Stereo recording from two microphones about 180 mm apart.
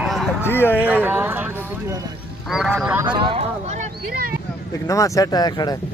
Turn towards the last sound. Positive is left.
turn(degrees=20)  # may be behind; listen again after turning